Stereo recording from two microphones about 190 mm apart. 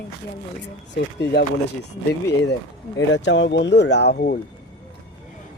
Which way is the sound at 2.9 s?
75° left (ahead or behind).